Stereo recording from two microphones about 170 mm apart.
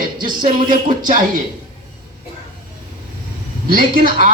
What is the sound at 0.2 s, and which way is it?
Speech, 55° right (ahead or behind).